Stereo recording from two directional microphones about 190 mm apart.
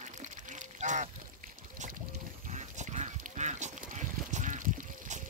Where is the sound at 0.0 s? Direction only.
40° right (ahead or behind).